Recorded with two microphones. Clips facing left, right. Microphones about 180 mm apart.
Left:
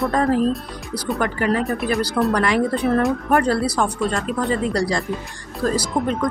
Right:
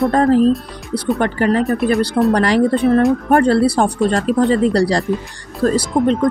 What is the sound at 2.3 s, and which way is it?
Speech, 30° right (ahead or behind).